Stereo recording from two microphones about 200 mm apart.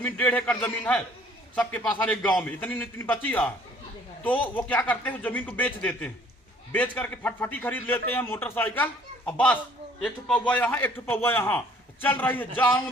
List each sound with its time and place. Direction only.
0.0 s a man's voice: 10° left (ahead or behind)